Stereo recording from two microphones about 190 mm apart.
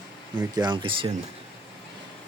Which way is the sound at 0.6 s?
25° right (ahead or behind).